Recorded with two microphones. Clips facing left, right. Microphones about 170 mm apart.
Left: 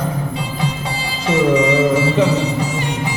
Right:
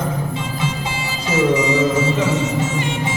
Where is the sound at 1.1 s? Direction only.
30° left (ahead or behind).